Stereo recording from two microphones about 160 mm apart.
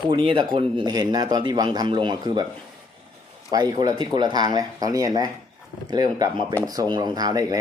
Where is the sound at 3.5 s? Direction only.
25° right (ahead or behind).